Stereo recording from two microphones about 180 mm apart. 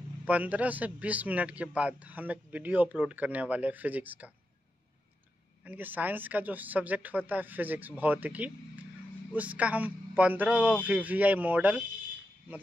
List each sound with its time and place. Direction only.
0.2 s a man's voice: 10° right (ahead or behind)
5.6 s a man's voice: 10° right (ahead or behind)